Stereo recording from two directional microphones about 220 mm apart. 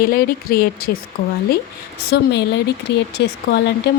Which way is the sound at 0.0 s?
45° left (ahead or behind).